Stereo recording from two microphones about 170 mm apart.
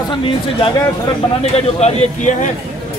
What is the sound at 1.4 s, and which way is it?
Speech, 40° left (ahead or behind).